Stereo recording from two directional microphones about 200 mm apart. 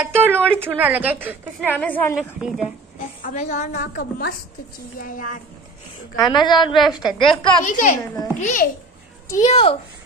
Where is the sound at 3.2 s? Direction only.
35° left (ahead or behind).